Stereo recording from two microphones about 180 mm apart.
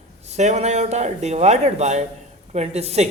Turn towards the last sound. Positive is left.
turn(degrees=-35)  # may be behind; listen again after turning